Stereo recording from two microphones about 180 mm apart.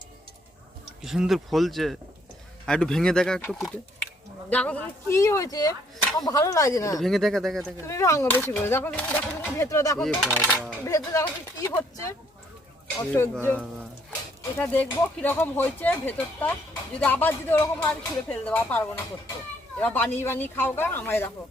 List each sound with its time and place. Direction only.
1.0 s speech: centre (ahead or behind); by 7.0 s 20° left (ahead or behind)
7.0 s speech: centre (ahead or behind)
7.9 s speech: 15° left (ahead or behind)